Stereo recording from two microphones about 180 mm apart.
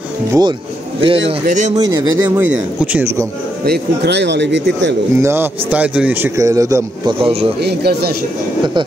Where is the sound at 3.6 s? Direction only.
65° right (ahead or behind).